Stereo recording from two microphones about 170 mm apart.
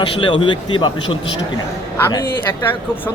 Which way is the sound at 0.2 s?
30° left (ahead or behind).